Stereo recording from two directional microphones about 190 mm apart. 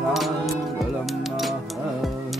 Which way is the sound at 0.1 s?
Centre (ahead or behind).